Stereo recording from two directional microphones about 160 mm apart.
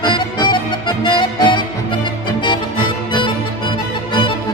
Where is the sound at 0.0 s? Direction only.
30° left (ahead or behind).